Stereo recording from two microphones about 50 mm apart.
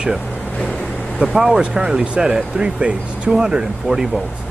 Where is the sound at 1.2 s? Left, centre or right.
Centre.